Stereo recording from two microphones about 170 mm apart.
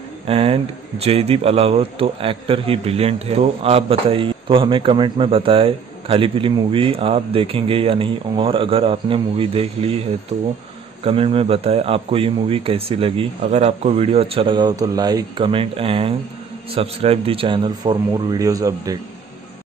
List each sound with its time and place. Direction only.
0.3 s speech: 35° right (ahead or behind)
11.1 s speech: 35° right (ahead or behind)